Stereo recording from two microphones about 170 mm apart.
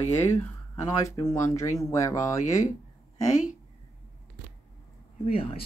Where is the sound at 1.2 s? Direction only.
20° left (ahead or behind).